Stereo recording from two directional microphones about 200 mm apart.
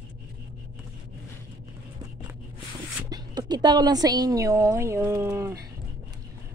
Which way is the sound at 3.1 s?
20° right (ahead or behind).